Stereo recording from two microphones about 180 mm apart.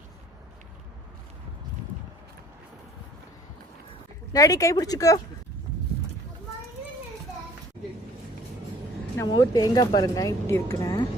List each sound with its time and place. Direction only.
4.3 s speech: 20° left (ahead or behind)
9.1 s speech: 20° left (ahead or behind)